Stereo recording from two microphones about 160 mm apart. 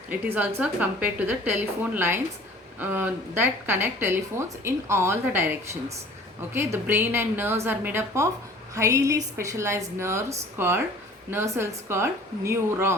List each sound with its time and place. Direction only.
0.1 s a woman's voice: 15° right (ahead or behind)